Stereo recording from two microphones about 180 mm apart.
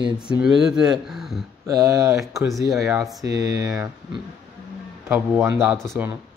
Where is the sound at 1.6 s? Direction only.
20° right (ahead or behind).